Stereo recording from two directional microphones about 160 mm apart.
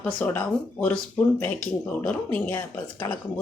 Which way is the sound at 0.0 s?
10° left (ahead or behind).